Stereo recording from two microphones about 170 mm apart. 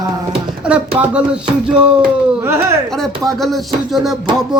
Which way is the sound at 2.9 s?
Centre (ahead or behind).